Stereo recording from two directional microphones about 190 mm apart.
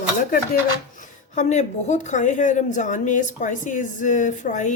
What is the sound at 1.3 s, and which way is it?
A woman's voice, 40° left (ahead or behind).